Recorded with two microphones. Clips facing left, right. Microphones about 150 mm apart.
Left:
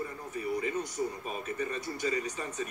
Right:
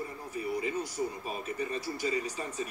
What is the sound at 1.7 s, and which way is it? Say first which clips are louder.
Speech: right 2 dB; 35° right (ahead or behind).